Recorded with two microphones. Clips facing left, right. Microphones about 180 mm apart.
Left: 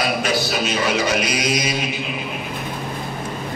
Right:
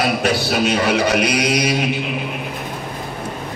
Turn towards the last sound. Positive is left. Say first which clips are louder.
# right 5 dB
turn(degrees=-65)  # may be behind; listen again after turning